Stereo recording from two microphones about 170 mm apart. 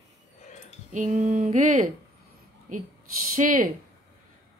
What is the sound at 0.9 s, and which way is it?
Speech, 45° right (ahead or behind).